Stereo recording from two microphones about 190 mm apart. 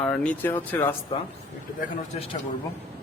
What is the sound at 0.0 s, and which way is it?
Speech, 5° left (ahead or behind).